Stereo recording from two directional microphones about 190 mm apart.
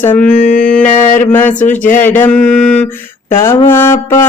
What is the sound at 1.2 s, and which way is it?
Music, 10° left (ahead or behind).